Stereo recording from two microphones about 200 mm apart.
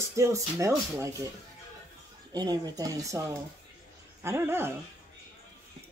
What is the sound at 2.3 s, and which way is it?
A child's voice, 20° right (ahead or behind).